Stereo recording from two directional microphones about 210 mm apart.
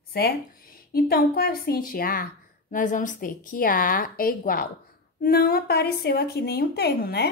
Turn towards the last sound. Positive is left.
turn(degrees=50)  # may be behind; listen again after turning